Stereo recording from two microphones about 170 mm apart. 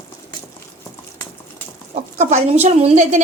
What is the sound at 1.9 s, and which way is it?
Speech, 40° right (ahead or behind).